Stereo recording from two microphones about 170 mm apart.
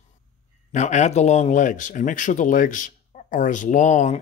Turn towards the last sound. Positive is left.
turn(degrees=45)  # may be behind; listen again after turning